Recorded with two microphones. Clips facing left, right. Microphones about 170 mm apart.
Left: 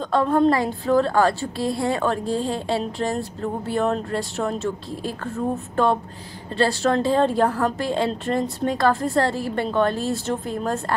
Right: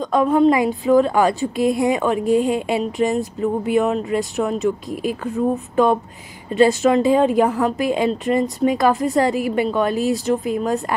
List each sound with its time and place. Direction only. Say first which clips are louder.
0.1 s a woman's voice: right 3 dB; 10° right (ahead or behind)
4.8 s a woman's voice: right 6 dB; 15° right (ahead or behind)
6.5 s a woman's voice: right 6 dB; 20° right (ahead or behind)
7.4 s a woman's voice: right 3 dB; centre (ahead or behind)
9.3 s a woman's voice: right 5 dB; 15° right (ahead or behind)
9.7 s a woman's voice: right 3 dB; centre (ahead or behind)